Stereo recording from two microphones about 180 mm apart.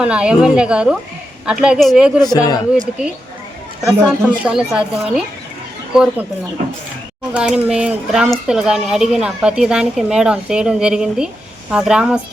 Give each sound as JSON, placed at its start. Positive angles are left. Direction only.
{"t": 0.0, "sound": "speech", "side_deg": -5}
{"t": 2.2, "sound": "speech", "side_deg": 20}
{"t": 3.8, "sound": "speech", "side_deg": -5}
{"t": 7.3, "sound": "speech", "side_deg": -5}